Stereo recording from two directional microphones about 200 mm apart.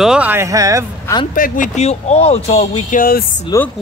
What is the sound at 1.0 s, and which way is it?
Speech, 20° left (ahead or behind).